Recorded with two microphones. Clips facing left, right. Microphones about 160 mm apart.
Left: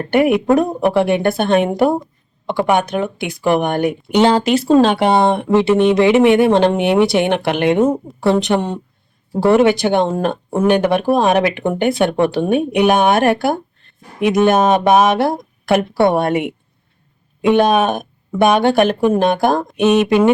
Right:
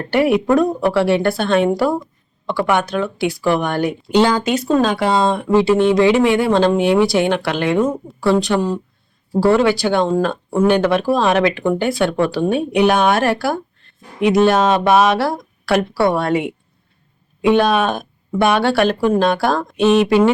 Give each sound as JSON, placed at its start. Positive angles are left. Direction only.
{"t": 0.3, "sound": "speech", "side_deg": 20}
{"t": 17.5, "sound": "a woman's voice", "side_deg": 20}